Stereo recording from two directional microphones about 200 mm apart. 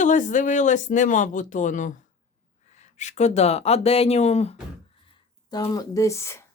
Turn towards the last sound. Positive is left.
turn(degrees=15)  # may be behind; listen again after turning